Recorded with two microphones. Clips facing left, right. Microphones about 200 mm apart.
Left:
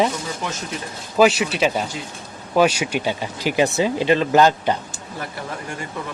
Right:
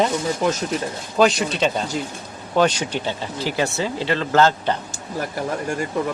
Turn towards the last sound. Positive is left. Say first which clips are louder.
# left 2 dB
turn(degrees=15)  # may be behind; listen again after turning